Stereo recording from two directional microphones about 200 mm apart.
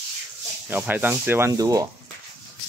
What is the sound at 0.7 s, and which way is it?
Sanding, 10° right (ahead or behind).